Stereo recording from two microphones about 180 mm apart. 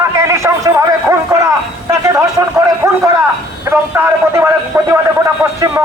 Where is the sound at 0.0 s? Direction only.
15° right (ahead or behind).